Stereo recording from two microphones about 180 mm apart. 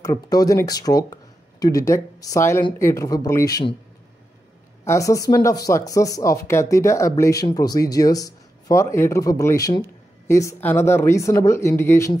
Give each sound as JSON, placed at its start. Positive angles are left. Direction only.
{"t": 0.0, "sound": "speech", "side_deg": 20}
{"t": 4.8, "sound": "speech", "side_deg": 20}